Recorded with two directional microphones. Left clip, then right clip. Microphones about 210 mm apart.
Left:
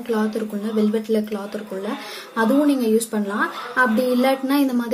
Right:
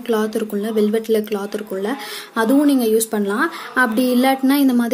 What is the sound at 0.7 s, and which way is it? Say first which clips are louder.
Speech: right 3 dB; 45° right (ahead or behind).